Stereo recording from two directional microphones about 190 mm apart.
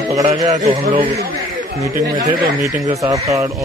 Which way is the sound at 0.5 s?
30° right (ahead or behind).